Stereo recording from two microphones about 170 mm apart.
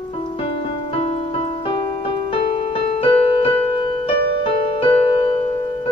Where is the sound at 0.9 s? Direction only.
35° left (ahead or behind).